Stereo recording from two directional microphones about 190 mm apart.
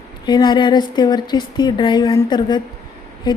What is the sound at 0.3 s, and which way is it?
A woman's voice, 25° left (ahead or behind).